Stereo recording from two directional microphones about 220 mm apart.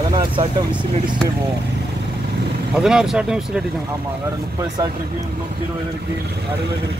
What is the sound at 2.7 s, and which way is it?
Speech, 5° right (ahead or behind).